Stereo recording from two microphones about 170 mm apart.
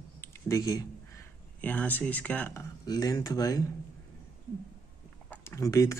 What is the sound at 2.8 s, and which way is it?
Speech, 20° left (ahead or behind).